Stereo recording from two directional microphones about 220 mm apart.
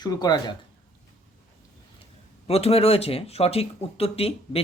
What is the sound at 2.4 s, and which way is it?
Speech, 25° left (ahead or behind).